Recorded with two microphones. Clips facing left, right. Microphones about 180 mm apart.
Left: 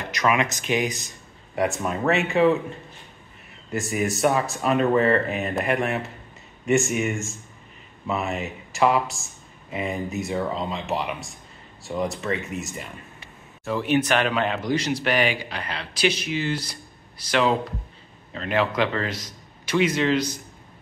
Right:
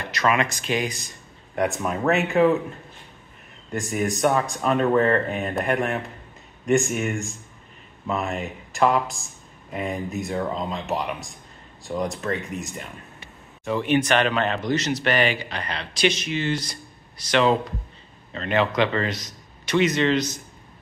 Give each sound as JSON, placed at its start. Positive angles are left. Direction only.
{"t": 0.1, "sound": "speech", "side_deg": 15}
{"t": 1.5, "sound": "a man's voice", "side_deg": 0}
{"t": 3.7, "sound": "a man's voice", "side_deg": 5}